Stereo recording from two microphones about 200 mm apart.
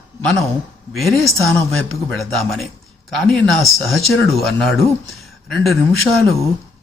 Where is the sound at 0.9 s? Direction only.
Centre (ahead or behind).